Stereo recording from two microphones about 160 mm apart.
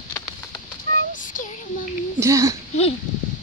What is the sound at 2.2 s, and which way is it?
Speech, 20° right (ahead or behind).